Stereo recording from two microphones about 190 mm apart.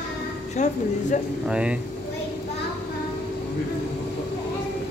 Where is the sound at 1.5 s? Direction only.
5° right (ahead or behind).